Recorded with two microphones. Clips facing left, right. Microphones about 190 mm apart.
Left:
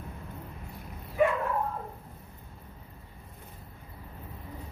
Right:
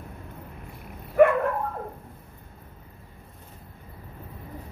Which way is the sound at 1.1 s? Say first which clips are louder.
Right 8 dB; 60° right (ahead or behind).